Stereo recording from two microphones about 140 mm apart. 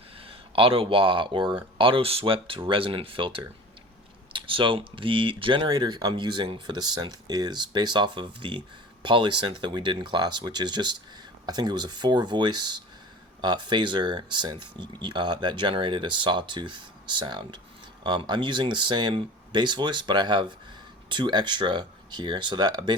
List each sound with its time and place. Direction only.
0.2 s speech: 40° right (ahead or behind)